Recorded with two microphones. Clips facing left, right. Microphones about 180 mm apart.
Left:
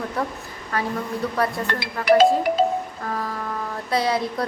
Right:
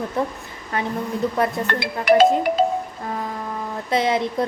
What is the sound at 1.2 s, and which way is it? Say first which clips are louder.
Speech: right 6 dB; 25° right (ahead or behind).